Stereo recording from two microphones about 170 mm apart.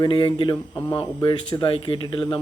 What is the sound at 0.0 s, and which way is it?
Speech, 30° left (ahead or behind).